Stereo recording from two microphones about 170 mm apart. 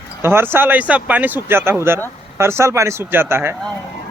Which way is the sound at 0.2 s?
15° right (ahead or behind).